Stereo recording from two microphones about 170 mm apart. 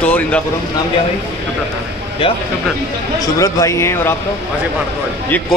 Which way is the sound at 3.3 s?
20° left (ahead or behind).